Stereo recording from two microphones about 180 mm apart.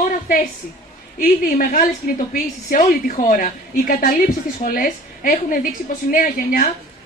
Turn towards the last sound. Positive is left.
turn(degrees=50)  # may be behind; listen again after turning